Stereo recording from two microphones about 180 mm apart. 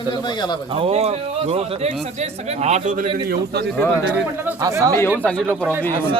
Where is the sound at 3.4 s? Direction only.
65° right (ahead or behind).